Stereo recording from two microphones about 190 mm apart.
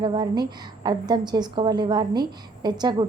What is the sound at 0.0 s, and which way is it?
A woman's voice, 20° right (ahead or behind).